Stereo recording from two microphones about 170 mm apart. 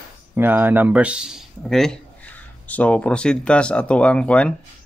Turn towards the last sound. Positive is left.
turn(degrees=5)  # may be behind; listen again after turning